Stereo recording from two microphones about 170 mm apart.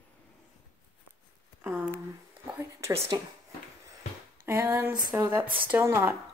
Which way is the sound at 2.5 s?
15° right (ahead or behind).